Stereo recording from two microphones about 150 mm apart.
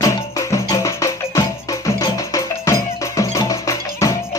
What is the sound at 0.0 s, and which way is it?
Music, 25° left (ahead or behind).